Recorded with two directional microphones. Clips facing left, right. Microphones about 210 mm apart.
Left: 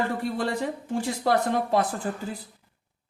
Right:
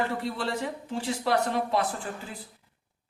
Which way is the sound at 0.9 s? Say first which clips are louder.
Left 3 dB; 45° left (ahead or behind).